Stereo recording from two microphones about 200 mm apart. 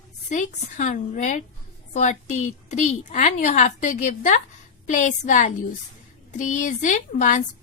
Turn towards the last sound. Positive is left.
turn(degrees=40)  # may be behind; listen again after turning